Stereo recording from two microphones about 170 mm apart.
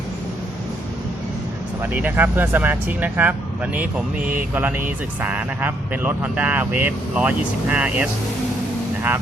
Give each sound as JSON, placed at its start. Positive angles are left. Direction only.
{"t": 1.8, "sound": "speech", "side_deg": -10}